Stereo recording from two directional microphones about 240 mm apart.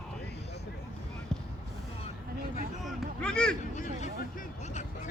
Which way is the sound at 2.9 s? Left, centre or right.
Centre.